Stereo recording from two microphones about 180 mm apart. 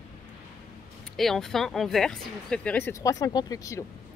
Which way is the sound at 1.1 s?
Centre (ahead or behind).